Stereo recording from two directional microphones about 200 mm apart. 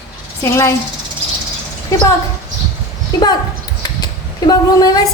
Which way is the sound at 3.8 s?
20° left (ahead or behind).